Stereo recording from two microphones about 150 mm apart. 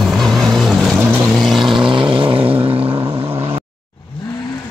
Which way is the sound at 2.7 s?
20° right (ahead or behind).